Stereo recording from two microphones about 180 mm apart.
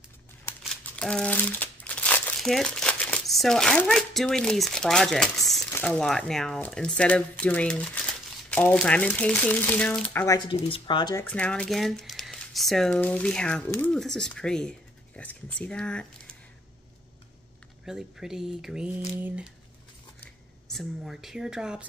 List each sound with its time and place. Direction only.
0.7 s crumpling: 5° left (ahead or behind)
5.7 s speech: 5° left (ahead or behind)
10.7 s speech: 25° left (ahead or behind)
11.2 s speech: 5° left (ahead or behind)
17.8 s speech: 5° right (ahead or behind)
20.6 s speech: centre (ahead or behind)